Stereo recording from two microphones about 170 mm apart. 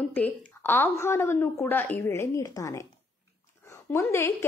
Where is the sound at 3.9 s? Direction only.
15° left (ahead or behind).